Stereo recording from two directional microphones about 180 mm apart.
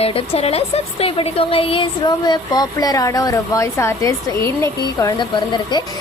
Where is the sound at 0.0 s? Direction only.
35° left (ahead or behind).